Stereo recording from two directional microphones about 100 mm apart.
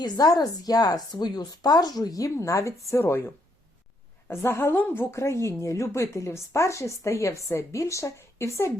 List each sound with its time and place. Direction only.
0.0 s speech: 40° left (ahead or behind)